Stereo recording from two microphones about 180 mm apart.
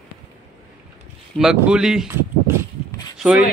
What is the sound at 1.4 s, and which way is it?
Speech, 5° right (ahead or behind).